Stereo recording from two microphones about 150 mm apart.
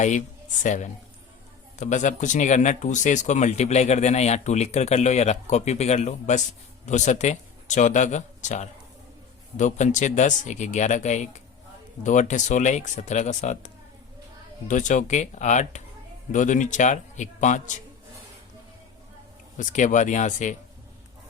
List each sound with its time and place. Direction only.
0.6 s speech: 55° left (ahead or behind)
14.7 s speech: 55° left (ahead or behind)
19.5 s speech: 55° left (ahead or behind)